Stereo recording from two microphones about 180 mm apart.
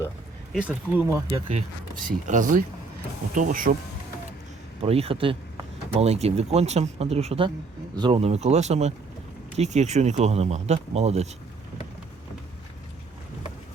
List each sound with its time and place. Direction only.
0.5 s speech: 5° right (ahead or behind)
2.0 s speech: 45° right (ahead or behind)
4.8 s speech: 35° right (ahead or behind)